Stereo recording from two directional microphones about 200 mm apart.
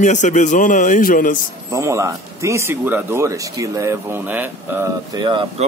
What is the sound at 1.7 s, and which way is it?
Speech, 15° right (ahead or behind).